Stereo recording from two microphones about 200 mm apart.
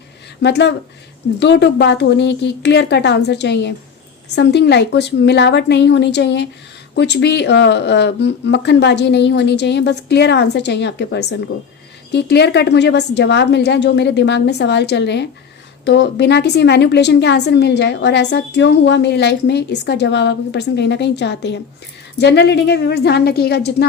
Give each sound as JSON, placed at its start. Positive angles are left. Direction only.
{"t": 0.4, "sound": "a woman's voice", "side_deg": 60}